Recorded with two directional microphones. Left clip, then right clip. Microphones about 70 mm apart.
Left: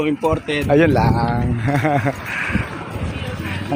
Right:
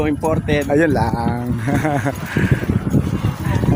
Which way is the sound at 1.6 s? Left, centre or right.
Right.